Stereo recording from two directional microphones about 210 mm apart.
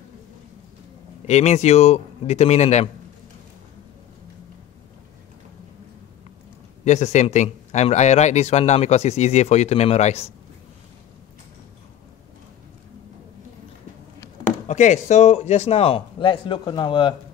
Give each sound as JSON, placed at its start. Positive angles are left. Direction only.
{"t": 1.2, "sound": "a man's voice", "side_deg": 35}
{"t": 6.8, "sound": "a man's voice", "side_deg": 35}
{"t": 14.7, "sound": "speech", "side_deg": 35}